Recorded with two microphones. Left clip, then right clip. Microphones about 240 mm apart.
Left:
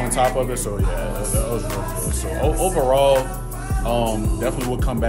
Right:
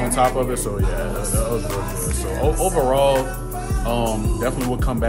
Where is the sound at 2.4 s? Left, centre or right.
Centre.